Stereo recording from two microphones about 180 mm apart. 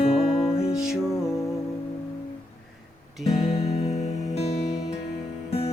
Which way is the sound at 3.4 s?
35° left (ahead or behind).